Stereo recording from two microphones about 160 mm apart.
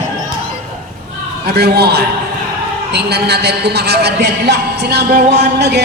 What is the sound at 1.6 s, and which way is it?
A man's voice, 90° right.